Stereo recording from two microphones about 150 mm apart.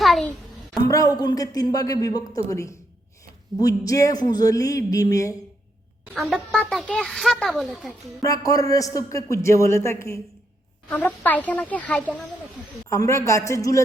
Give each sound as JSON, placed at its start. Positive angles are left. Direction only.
{"t": 0.0, "sound": "a sound", "side_deg": 0}
{"t": 0.8, "sound": "speech", "side_deg": 25}
{"t": 6.1, "sound": "a child's voice", "side_deg": 0}
{"t": 8.2, "sound": "speech", "side_deg": 25}
{"t": 12.9, "sound": "speech", "side_deg": 20}